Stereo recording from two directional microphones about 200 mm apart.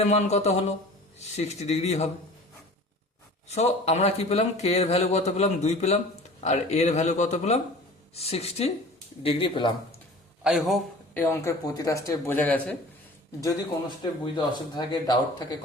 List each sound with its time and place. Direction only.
0.0 s a man's voice: 35° left (ahead or behind)
3.5 s a man's voice: 35° left (ahead or behind)
10.4 s a man's voice: centre (ahead or behind)
11.2 s speech: 15° left (ahead or behind)
14.0 s speech: 20° left (ahead or behind)